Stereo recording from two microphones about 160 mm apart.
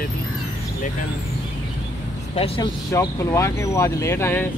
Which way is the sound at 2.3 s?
35° left (ahead or behind).